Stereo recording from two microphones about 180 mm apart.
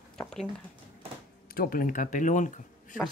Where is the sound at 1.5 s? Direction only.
55° left (ahead or behind).